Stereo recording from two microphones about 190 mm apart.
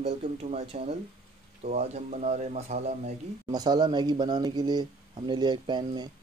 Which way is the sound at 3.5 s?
20° right (ahead or behind).